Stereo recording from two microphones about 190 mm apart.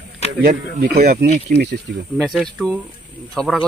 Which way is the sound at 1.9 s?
60° right (ahead or behind).